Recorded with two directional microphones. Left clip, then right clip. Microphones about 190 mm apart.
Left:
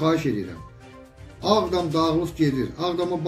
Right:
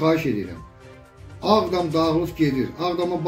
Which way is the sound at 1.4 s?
15° left (ahead or behind).